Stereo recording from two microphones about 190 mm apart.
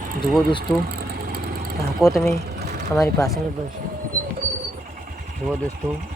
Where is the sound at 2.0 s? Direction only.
Centre (ahead or behind).